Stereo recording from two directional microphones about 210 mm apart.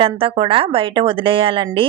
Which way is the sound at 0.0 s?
25° right (ahead or behind).